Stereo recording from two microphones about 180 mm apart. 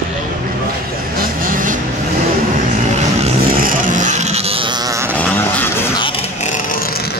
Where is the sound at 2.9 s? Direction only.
45° right (ahead or behind).